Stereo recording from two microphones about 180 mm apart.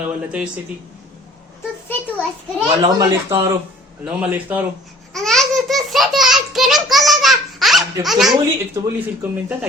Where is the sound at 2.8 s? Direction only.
15° right (ahead or behind).